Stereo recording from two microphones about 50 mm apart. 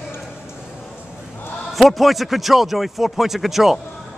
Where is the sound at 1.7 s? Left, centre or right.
Centre.